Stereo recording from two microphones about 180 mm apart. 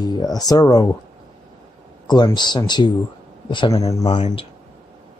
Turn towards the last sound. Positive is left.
turn(degrees=20)  # may be behind; listen again after turning